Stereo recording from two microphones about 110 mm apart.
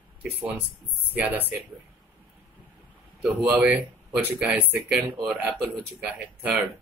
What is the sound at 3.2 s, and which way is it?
Speech, 15° right (ahead or behind).